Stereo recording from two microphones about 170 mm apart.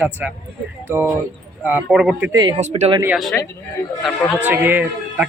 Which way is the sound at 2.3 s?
20° right (ahead or behind).